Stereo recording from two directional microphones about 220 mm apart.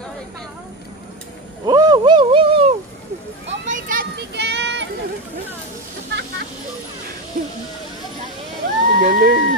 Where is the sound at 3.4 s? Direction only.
55° right (ahead or behind).